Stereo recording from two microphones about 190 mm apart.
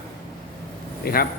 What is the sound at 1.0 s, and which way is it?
Speech, 50° left (ahead or behind).